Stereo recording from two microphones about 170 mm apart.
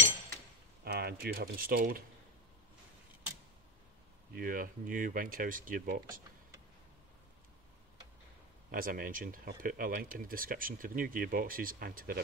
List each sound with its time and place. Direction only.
0.8 s speech: 65° right (ahead or behind)
4.4 s speech: 55° right (ahead or behind)
8.7 s speech: 55° right (ahead or behind)